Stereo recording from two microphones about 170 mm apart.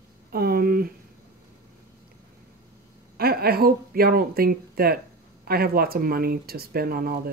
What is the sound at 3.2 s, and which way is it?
Speech, 65° right (ahead or behind).